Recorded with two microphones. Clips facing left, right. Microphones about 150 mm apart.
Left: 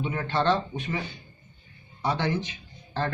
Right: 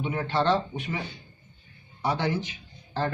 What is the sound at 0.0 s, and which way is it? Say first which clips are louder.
Speech: even; 15° right (ahead or behind).